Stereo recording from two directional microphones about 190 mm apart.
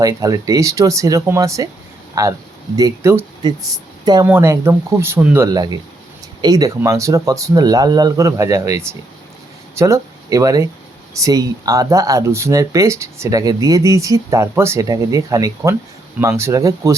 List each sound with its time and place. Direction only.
0.0 s a woman's voice: 20° right (ahead or behind)